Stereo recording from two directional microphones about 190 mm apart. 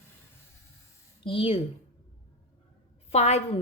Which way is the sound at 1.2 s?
30° left (ahead or behind).